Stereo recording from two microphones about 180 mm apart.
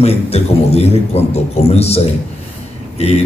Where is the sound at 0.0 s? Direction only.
35° left (ahead or behind).